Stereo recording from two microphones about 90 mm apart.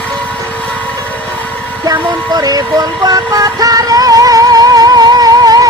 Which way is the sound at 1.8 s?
45° right (ahead or behind).